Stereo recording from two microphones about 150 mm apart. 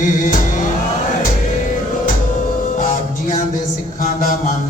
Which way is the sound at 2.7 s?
60° left (ahead or behind).